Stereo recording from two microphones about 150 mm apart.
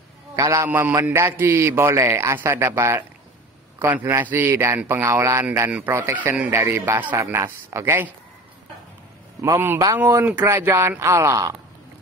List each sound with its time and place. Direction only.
0.4 s a man's voice: 20° right (ahead or behind)
9.4 s a man's voice: 15° right (ahead or behind)